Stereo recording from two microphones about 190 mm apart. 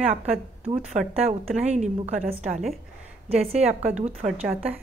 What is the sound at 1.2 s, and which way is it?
A woman's voice, 35° right (ahead or behind).